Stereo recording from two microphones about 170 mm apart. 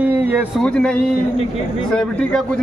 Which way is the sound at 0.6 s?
5° left (ahead or behind).